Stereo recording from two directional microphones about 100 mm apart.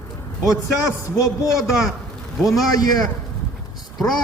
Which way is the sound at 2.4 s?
Centre (ahead or behind).